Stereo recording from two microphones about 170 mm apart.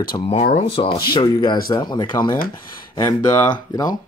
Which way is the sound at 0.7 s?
30° left (ahead or behind).